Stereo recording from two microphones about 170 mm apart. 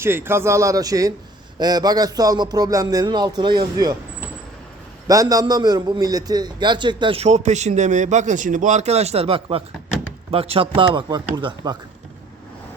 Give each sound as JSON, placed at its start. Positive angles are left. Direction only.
{"t": 0.0, "sound": "a man's voice", "side_deg": -15}
{"t": 5.0, "sound": "a man's voice", "side_deg": -20}